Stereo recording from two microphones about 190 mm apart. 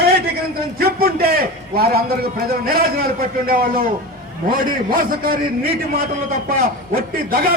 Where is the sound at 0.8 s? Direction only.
50° right (ahead or behind).